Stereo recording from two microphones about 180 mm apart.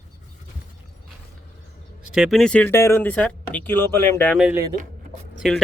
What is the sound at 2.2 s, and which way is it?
Speech, centre (ahead or behind).